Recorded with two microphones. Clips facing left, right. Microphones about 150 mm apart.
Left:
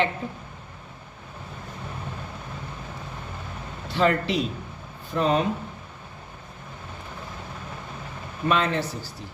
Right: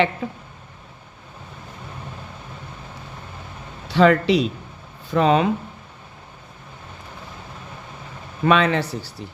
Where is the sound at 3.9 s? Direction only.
90° right.